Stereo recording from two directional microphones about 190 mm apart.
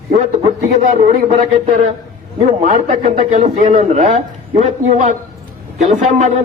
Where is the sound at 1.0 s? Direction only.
40° right (ahead or behind).